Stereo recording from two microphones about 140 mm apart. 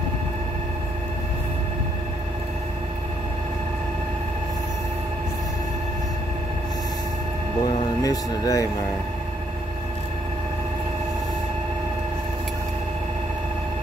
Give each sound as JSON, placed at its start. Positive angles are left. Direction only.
{"t": 7.6, "sound": "music", "side_deg": 25}